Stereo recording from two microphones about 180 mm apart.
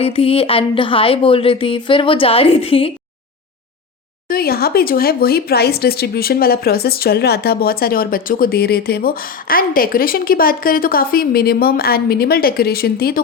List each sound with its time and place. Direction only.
0.0 s speech: 35° left (ahead or behind)
4.3 s speech: 55° left (ahead or behind)